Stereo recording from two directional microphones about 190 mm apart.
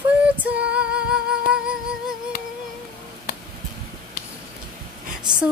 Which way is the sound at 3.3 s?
50° left (ahead or behind).